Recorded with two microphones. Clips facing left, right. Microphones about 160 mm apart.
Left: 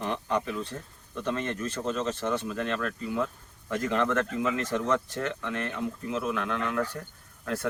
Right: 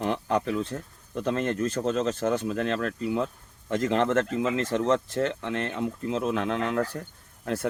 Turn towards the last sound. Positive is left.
turn(degrees=-25)  # may be behind; listen again after turning